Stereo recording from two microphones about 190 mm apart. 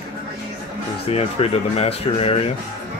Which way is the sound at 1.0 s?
30° left (ahead or behind).